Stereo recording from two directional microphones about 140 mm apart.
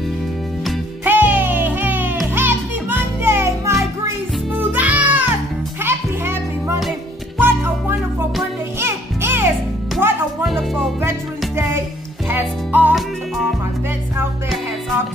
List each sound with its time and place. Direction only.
1.0 s music: 15° right (ahead or behind)
8.7 s music: 15° right (ahead or behind)
10.4 s music: centre (ahead or behind)
11.0 s music: 15° right (ahead or behind)